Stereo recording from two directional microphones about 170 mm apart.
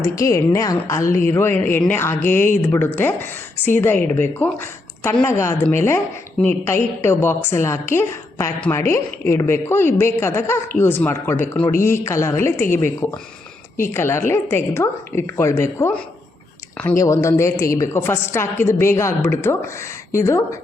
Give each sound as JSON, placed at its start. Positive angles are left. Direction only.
{"t": 0.0, "sound": "a woman's voice", "side_deg": 20}